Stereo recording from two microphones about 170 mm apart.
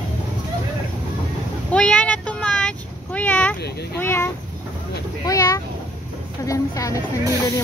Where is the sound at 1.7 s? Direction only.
5° left (ahead or behind).